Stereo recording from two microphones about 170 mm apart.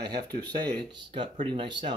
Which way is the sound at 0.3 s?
65° right (ahead or behind).